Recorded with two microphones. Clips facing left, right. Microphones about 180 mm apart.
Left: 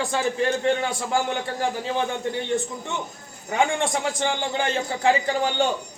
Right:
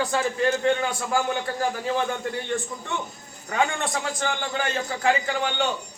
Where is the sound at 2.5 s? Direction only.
25° left (ahead or behind).